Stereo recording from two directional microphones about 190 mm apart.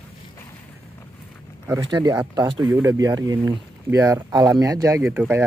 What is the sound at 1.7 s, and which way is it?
Speech, 20° right (ahead or behind).